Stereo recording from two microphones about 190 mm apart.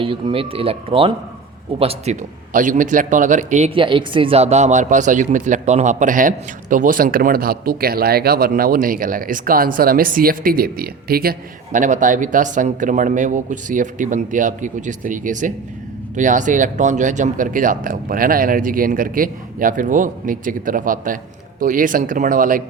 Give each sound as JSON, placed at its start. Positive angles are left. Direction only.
{"t": 0.0, "sound": "a man's voice", "side_deg": -25}
{"t": 2.5, "sound": "speech", "side_deg": -45}
{"t": 3.8, "sound": "speech", "side_deg": -25}